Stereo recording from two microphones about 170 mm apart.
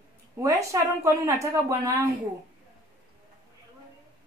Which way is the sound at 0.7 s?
20° right (ahead or behind).